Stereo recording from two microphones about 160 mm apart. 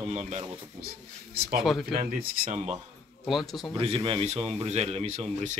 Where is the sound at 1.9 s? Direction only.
50° right (ahead or behind).